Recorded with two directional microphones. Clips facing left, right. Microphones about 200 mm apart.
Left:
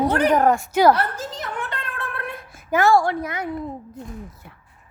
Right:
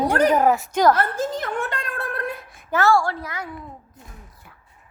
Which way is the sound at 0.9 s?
50° right (ahead or behind).